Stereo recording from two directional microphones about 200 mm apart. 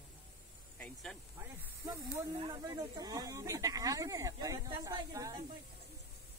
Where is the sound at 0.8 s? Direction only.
Centre (ahead or behind).